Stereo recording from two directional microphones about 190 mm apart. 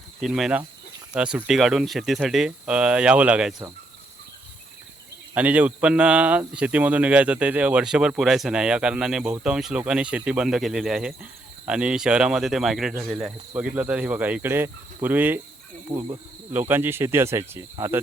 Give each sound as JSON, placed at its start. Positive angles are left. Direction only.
{"t": 0.2, "sound": "speech", "side_deg": 0}
{"t": 5.3, "sound": "speech", "side_deg": -5}
{"t": 15.9, "sound": "speech", "side_deg": -25}
{"t": 16.5, "sound": "speech", "side_deg": -10}